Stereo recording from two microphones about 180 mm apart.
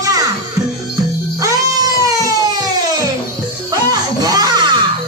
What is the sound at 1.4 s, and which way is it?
Baby cry, 20° right (ahead or behind).